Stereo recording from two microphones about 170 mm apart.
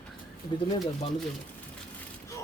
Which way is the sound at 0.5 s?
25° left (ahead or behind).